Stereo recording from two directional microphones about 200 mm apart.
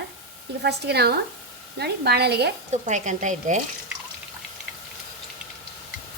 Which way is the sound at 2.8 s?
35° right (ahead or behind).